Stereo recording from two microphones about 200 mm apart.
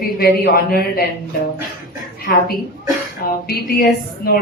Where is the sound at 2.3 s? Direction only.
55° left (ahead or behind).